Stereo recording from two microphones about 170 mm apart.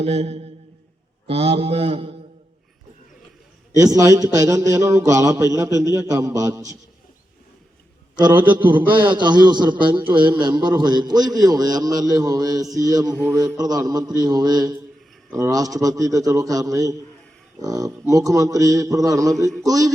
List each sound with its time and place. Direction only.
0.0 s mantra: 40° right (ahead or behind)
3.8 s a man's voice: 20° right (ahead or behind)
8.4 s a man's voice: 10° right (ahead or behind)
9.0 s a man's voice: 25° right (ahead or behind)